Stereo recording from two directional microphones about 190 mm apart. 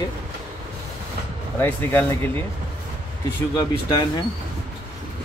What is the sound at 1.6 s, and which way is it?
Speech, 10° left (ahead or behind).